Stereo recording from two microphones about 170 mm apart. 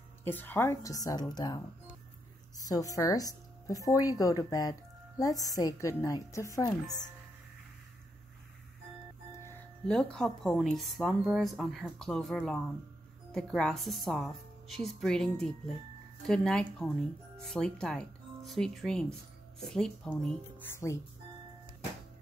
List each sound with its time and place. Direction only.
0.2 s speech: 10° left (ahead or behind)
9.6 s music: 5° left (ahead or behind)
10.1 s a woman's voice: 5° left (ahead or behind)